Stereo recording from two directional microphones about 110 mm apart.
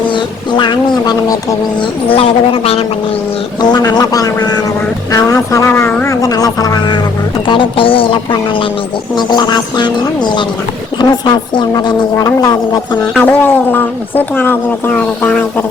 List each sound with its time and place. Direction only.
0.1 s a sound: 45° left (ahead or behind)
2.0 s a woman's voice: 55° left (ahead or behind)
3.6 s speech: 40° left (ahead or behind); by 6.1 s 20° left (ahead or behind)
6.1 s speech: 35° left (ahead or behind)
7.4 s a sound: 50° left (ahead or behind)
9.1 s speech: 40° left (ahead or behind)
13.2 s speech: 15° left (ahead or behind)